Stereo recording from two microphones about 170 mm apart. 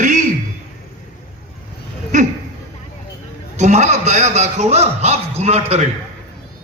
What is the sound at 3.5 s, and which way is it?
A man's voice, 40° right (ahead or behind).